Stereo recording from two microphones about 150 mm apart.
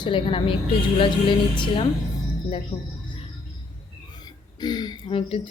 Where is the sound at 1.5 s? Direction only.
35° left (ahead or behind).